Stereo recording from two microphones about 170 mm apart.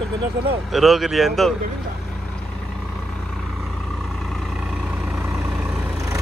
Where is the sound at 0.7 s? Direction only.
Centre (ahead or behind).